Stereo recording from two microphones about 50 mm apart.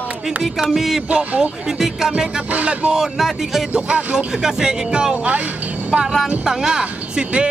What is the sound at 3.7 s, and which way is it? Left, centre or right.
Speech, right.